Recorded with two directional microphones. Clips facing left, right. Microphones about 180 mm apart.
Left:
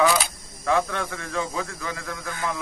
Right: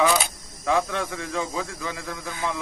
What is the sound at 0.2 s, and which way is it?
Speech, 15° right (ahead or behind).